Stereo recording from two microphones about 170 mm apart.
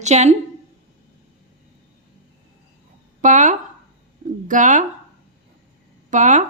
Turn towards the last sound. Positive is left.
turn(degrees=-50)  # may be behind; listen again after turning